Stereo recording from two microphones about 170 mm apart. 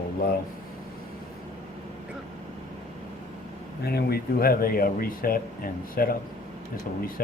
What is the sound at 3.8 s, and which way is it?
Speech, 65° left (ahead or behind).